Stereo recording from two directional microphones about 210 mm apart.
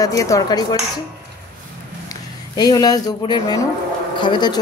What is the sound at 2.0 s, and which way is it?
Speech, 20° left (ahead or behind).